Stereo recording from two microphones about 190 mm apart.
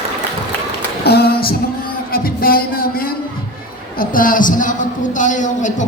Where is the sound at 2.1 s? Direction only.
50° left (ahead or behind).